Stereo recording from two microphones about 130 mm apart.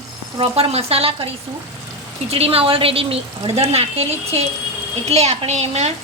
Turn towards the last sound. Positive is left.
turn(degrees=-55)  # may be behind; listen again after turning